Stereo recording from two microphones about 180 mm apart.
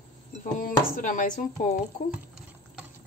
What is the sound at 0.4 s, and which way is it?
Speech, 50° left (ahead or behind).